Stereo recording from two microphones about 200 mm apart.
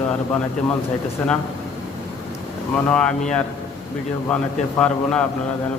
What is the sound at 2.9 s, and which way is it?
A man's voice, 5° left (ahead or behind).